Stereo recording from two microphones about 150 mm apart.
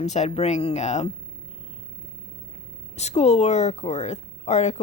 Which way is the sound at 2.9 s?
45° left (ahead or behind).